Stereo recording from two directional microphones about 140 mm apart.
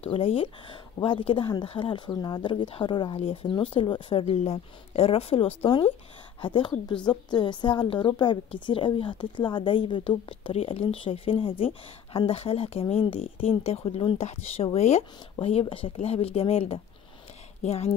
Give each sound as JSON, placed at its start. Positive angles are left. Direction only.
{"t": 0.0, "sound": "a woman's voice", "side_deg": 40}